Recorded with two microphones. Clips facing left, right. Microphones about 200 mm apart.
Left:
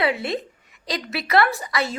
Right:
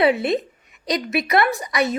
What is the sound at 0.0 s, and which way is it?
A woman's voice, 20° right (ahead or behind).